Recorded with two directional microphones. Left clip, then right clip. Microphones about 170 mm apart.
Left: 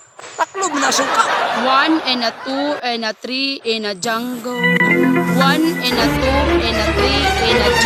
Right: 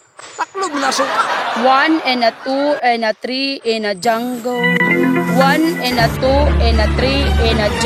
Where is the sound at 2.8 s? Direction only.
30° right (ahead or behind).